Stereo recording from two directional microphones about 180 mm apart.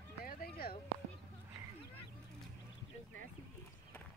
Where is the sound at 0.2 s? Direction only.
55° left (ahead or behind).